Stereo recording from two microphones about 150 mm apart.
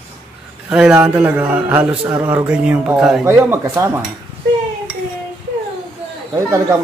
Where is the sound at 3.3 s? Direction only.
15° right (ahead or behind).